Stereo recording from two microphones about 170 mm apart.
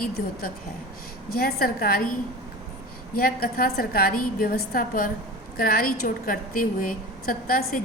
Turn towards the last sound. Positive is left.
turn(degrees=55)  # may be behind; listen again after turning